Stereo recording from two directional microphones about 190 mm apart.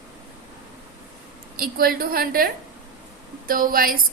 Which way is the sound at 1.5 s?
50° right (ahead or behind).